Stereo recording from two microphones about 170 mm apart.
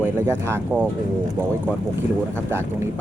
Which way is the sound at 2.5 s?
15° right (ahead or behind).